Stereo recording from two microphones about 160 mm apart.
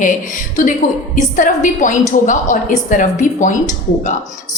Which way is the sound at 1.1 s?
50° left (ahead or behind).